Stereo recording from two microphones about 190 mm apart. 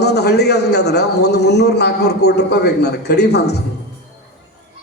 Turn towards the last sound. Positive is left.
turn(degrees=60)  # may be behind; listen again after turning